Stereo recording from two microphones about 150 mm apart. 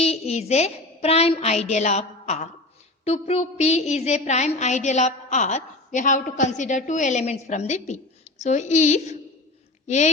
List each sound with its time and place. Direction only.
0.0 s a woman's voice: 45° left (ahead or behind)